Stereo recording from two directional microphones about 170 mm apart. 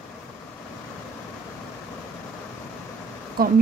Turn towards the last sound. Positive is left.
turn(degrees=-60)  # may be behind; listen again after turning